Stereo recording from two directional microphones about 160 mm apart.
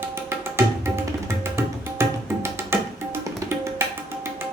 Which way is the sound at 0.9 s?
15° right (ahead or behind).